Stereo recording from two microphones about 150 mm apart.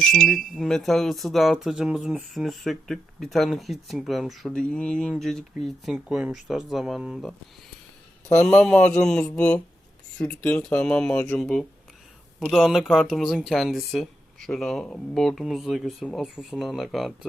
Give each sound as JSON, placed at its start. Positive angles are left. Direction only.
{"t": 0.1, "sound": "speech", "side_deg": 0}
{"t": 8.4, "sound": "speech", "side_deg": 5}